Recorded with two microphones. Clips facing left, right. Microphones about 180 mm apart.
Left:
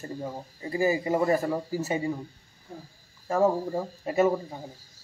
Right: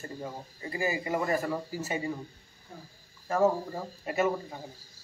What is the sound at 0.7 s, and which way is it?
Speech, 35° left (ahead or behind).